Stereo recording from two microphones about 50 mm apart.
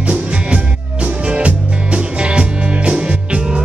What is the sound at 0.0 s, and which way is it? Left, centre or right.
Music, right.